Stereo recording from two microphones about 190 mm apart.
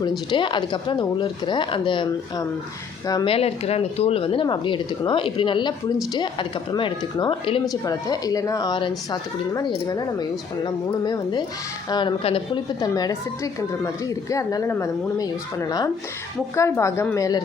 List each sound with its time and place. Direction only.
0.3 s a woman's voice: 25° left (ahead or behind)
6.7 s a woman's voice: 25° left (ahead or behind)